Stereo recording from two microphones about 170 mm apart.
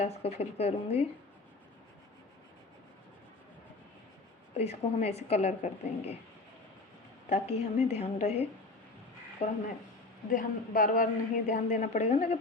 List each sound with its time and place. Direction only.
0.0 s a woman's voice: 40° left (ahead or behind)
4.5 s a woman's voice: 40° left (ahead or behind)
7.3 s a woman's voice: 35° left (ahead or behind)
10.2 s a man's voice: 50° left (ahead or behind); by 12.4 s 35° left (ahead or behind)